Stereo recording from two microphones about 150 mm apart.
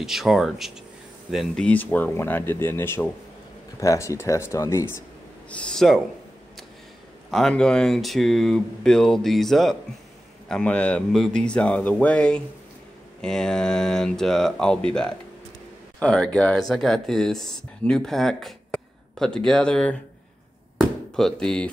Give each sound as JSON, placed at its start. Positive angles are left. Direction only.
{"t": 0.0, "sound": "speech", "side_deg": 0}
{"t": 5.5, "sound": "speech", "side_deg": 5}
{"t": 7.2, "sound": "speech", "side_deg": 5}
{"t": 20.7, "sound": "chop", "side_deg": 5}